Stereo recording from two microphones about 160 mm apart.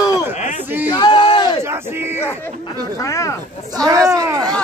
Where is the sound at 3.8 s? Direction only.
20° right (ahead or behind).